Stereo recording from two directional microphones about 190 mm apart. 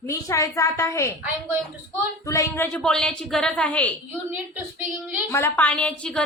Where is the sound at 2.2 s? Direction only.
15° left (ahead or behind).